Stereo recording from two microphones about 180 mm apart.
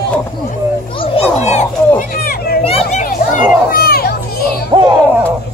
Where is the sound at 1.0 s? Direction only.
35° left (ahead or behind).